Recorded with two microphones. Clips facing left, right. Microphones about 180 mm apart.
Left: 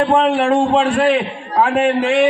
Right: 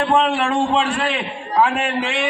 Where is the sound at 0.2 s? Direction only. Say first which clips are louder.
Left 4 dB; 45° left (ahead or behind).